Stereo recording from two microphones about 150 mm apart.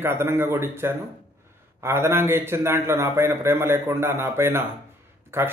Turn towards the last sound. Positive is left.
turn(degrees=-15)  # may be behind; listen again after turning